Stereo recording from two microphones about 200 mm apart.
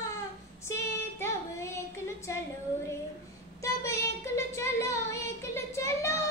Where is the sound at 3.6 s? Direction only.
15° left (ahead or behind).